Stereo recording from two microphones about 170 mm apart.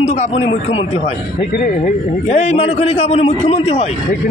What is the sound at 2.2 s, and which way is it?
Speech, 40° left (ahead or behind).